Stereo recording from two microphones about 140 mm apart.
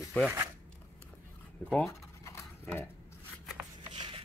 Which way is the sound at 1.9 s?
20° left (ahead or behind).